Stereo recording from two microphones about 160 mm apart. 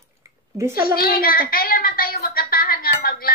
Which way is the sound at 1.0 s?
65° left (ahead or behind).